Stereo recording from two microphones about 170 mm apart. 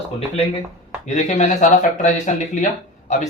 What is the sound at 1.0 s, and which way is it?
A man's voice, 40° left (ahead or behind).